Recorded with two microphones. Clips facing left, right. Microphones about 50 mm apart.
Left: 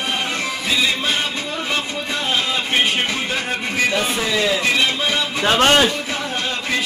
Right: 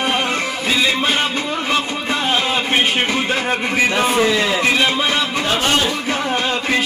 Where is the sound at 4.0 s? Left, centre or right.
Right.